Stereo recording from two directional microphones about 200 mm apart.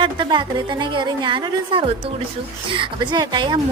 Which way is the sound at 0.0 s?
25° right (ahead or behind).